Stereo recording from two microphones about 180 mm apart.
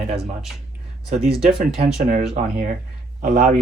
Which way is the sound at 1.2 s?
5° right (ahead or behind).